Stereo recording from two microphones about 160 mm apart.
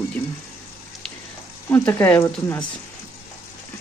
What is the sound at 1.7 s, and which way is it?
Speech, 15° left (ahead or behind).